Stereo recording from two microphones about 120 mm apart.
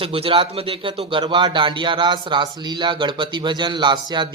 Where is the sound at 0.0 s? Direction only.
50° right (ahead or behind).